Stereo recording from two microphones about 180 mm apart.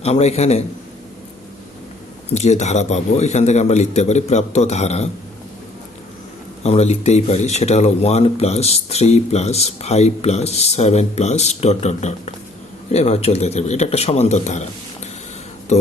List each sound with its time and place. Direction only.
0.0 s speech: 35° left (ahead or behind)
2.3 s speech: 40° left (ahead or behind)
6.6 s speech: 35° left (ahead or behind)